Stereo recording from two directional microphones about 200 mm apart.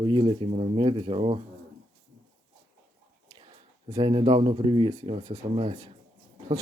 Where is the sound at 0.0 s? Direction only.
25° right (ahead or behind).